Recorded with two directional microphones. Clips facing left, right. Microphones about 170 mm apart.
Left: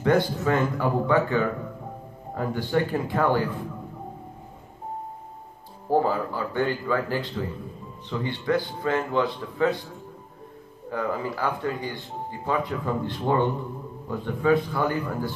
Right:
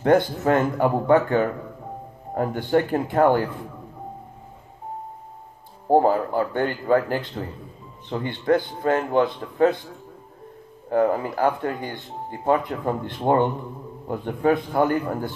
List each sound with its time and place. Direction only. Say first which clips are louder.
0.0 s speech: right 3 dB; 50° right (ahead or behind)
5.9 s speech: right 5 dB; 50° right (ahead or behind)
10.9 s speech: right 7 dB; 50° right (ahead or behind)